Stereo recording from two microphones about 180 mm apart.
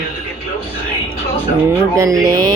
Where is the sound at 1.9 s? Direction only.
20° right (ahead or behind).